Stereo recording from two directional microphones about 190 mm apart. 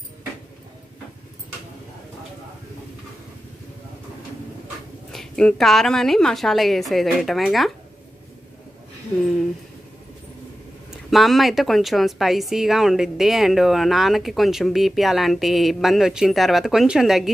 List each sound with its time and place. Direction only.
5.1 s a woman's voice: centre (ahead or behind)
10.9 s a woman's voice: centre (ahead or behind)